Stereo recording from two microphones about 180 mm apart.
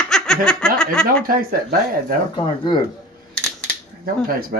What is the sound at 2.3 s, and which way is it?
Speech, 25° left (ahead or behind).